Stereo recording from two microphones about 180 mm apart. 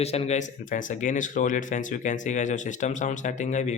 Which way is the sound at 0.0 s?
35° left (ahead or behind).